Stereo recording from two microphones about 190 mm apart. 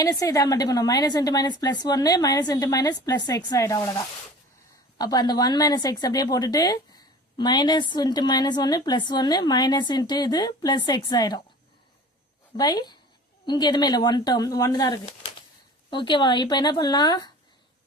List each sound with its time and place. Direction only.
0.0 s a woman's voice: 15° left (ahead or behind)
12.5 s a woman's voice: 20° left (ahead or behind)